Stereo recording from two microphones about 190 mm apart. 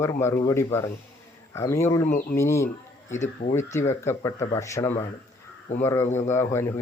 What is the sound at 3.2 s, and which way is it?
Speech, 40° left (ahead or behind).